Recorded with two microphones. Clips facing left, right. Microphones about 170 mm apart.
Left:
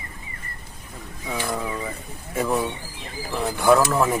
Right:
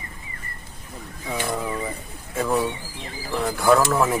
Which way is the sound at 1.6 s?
5° right (ahead or behind).